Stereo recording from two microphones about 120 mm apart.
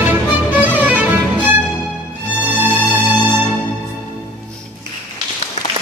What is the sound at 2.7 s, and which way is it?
Music, 15° left (ahead or behind).